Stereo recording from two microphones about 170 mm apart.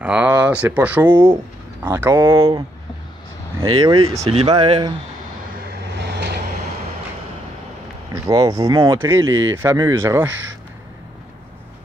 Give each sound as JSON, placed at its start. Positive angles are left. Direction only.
{"t": 0.0, "sound": "speech", "side_deg": -5}
{"t": 3.6, "sound": "speech", "side_deg": -25}
{"t": 4.2, "sound": "speech", "side_deg": -35}
{"t": 8.1, "sound": "speech", "side_deg": -20}